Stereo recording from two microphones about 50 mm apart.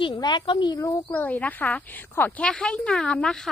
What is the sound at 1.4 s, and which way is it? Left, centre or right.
Speech, left.